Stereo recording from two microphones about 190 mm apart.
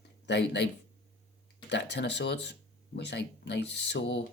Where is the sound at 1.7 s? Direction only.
65° left (ahead or behind).